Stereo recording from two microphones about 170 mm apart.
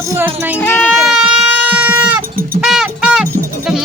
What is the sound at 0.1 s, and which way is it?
Speech, 15° right (ahead or behind).